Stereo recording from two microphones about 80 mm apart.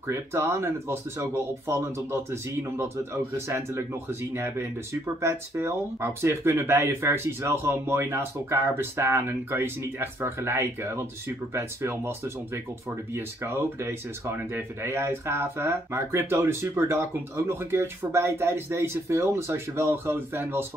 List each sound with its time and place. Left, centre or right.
0.1 s speech: right
3.3 s speech: right